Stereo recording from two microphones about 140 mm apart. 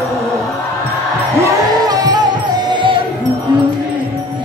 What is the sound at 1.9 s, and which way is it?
Music, 30° right (ahead or behind).